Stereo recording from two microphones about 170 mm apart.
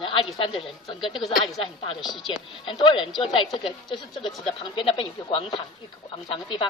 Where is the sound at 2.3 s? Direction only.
30° left (ahead or behind).